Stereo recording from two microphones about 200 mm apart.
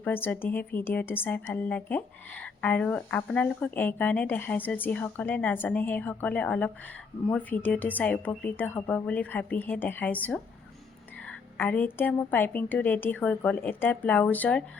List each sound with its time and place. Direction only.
0.0 s a woman's voice: 10° left (ahead or behind)